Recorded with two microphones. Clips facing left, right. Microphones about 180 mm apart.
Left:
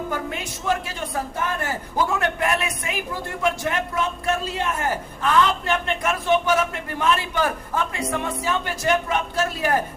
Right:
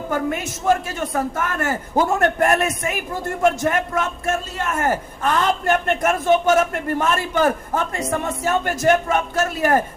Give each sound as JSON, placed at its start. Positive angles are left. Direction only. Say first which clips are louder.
{"t": 0.1, "sound": "a man's voice", "louder": "right 6 dB", "side_deg": -50}